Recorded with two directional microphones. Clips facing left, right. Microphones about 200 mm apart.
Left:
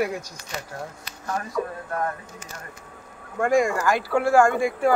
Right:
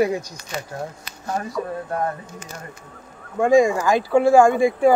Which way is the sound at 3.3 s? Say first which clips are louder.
Right 5 dB; 15° right (ahead or behind).